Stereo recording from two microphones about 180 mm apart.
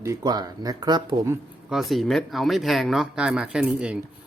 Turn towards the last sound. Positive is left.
turn(degrees=-5)  # may be behind; listen again after turning